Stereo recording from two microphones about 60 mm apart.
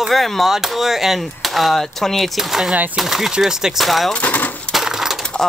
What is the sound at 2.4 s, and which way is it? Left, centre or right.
Speech, centre.